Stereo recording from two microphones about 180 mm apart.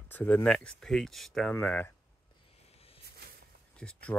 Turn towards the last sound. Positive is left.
turn(degrees=5)  # may be behind; listen again after turning